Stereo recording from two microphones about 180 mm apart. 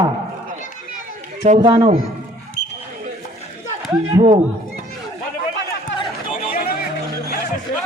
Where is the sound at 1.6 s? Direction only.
30° right (ahead or behind).